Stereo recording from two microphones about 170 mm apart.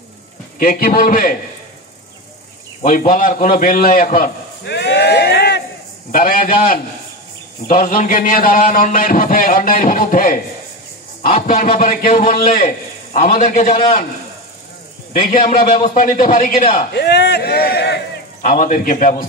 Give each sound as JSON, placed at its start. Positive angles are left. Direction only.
{"t": 0.6, "sound": "a man's voice", "side_deg": 60}
{"t": 2.8, "sound": "a man's voice", "side_deg": 50}
{"t": 4.6, "sound": "a sound", "side_deg": 80}
{"t": 6.1, "sound": "a man's voice", "side_deg": 55}
{"t": 11.4, "sound": "a man's voice", "side_deg": 55}
{"t": 15.2, "sound": "a man's voice", "side_deg": 60}
{"t": 16.9, "sound": "speech", "side_deg": 80}
{"t": 18.4, "sound": "a man's voice", "side_deg": 55}